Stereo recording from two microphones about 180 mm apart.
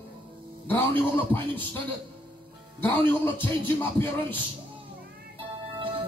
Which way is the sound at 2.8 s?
10° left (ahead or behind).